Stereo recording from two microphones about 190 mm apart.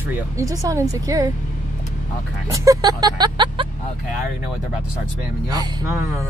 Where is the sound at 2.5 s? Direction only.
20° right (ahead or behind).